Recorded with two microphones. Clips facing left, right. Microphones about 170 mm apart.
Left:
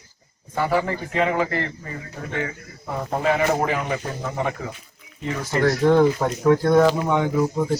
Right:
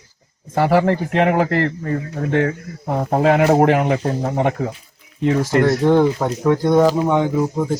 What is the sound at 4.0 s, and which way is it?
Speech, 35° right (ahead or behind).